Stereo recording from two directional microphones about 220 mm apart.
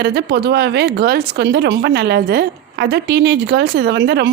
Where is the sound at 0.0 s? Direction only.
50° right (ahead or behind).